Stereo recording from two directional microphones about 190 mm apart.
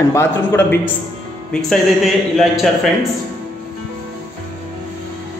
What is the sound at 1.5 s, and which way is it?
Speech, centre (ahead or behind).